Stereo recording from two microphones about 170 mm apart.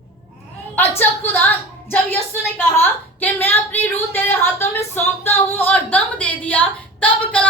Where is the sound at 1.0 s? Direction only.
10° left (ahead or behind).